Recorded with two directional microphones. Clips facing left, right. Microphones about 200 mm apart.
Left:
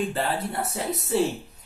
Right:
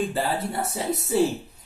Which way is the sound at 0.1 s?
Centre (ahead or behind).